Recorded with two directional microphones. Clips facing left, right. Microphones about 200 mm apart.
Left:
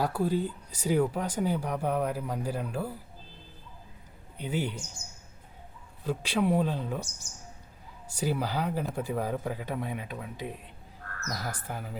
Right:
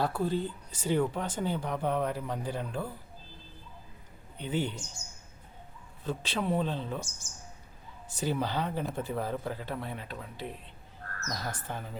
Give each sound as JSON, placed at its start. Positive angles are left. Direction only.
{"t": 0.0, "sound": "speech", "side_deg": 10}
{"t": 4.4, "sound": "speech", "side_deg": 10}
{"t": 6.1, "sound": "speech", "side_deg": 10}
{"t": 8.1, "sound": "speech", "side_deg": 10}